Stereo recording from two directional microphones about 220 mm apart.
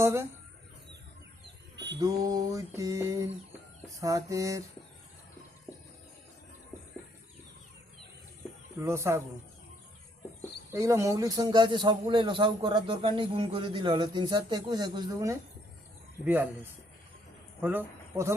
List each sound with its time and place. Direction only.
0.0 s speech: 10° right (ahead or behind)
1.7 s rodents: 50° right (ahead or behind)
2.0 s mantra: 15° right (ahead or behind)
8.8 s mantra: 10° right (ahead or behind)
10.7 s a man's voice: 15° right (ahead or behind)
16.2 s mantra: 10° right (ahead or behind)
17.6 s speech: 10° right (ahead or behind)